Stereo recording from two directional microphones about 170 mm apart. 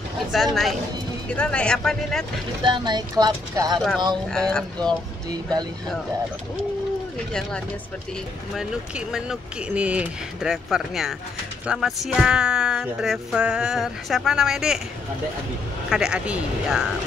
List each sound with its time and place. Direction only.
0.3 s speech: centre (ahead or behind)
2.6 s speech: 25° right (ahead or behind)
4.3 s speech: 5° left (ahead or behind)
5.3 s speech: 25° right (ahead or behind)
8.5 s speech: 5° right (ahead or behind)
15.9 s speech: 5° right (ahead or behind)